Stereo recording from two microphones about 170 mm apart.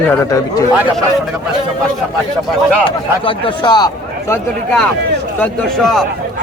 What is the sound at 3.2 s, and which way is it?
A man's voice, 25° left (ahead or behind).